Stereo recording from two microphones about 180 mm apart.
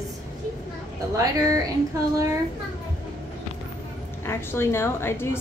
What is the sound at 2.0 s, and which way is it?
Speech, 20° right (ahead or behind).